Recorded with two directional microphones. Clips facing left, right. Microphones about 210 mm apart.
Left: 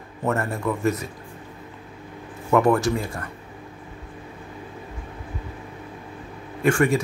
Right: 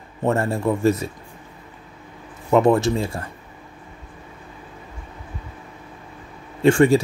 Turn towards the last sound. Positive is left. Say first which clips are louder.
# right 5 dB
turn(degrees=-25)  # may be behind; listen again after turning